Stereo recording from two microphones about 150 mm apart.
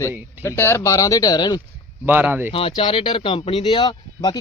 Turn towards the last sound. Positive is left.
turn(degrees=35)  # may be behind; listen again after turning